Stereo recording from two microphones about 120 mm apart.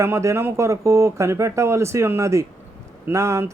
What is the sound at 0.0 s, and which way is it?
Speech, 25° right (ahead or behind).